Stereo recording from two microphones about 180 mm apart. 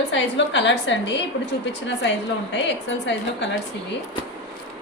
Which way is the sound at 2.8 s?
80° left.